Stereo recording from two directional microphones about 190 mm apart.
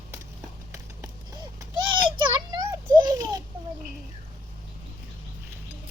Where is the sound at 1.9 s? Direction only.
25° right (ahead or behind).